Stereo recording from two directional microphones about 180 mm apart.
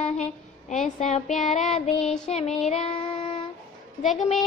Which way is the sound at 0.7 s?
40° left (ahead or behind).